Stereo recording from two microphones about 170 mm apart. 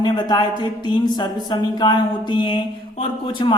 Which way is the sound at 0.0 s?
25° left (ahead or behind).